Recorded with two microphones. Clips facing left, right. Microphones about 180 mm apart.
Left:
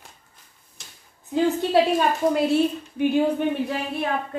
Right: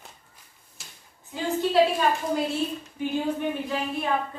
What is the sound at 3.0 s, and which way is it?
Speech, 65° left (ahead or behind).